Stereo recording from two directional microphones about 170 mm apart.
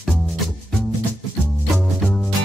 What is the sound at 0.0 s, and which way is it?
Music, centre (ahead or behind).